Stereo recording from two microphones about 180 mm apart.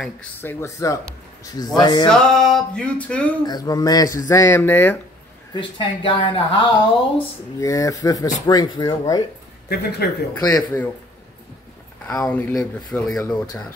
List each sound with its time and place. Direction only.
0.0 s speech: 10° left (ahead or behind); by 2.0 s 25° left (ahead or behind)
2.0 s music: 5° left (ahead or behind)
3.4 s speech: 20° left (ahead or behind)
5.5 s speech: 25° left (ahead or behind)
9.7 s speech: 65° left (ahead or behind)
10.4 s speech: 20° left (ahead or behind)
12.1 s music: 5° left (ahead or behind)